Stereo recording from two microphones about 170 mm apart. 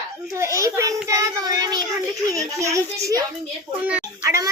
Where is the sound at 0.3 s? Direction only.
15° right (ahead or behind).